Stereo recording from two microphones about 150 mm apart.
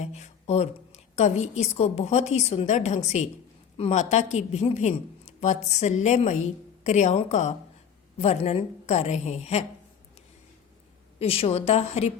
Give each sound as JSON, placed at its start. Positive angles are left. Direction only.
{"t": 0.0, "sound": "a woman's voice", "side_deg": 50}
{"t": 11.2, "sound": "a woman's voice", "side_deg": 40}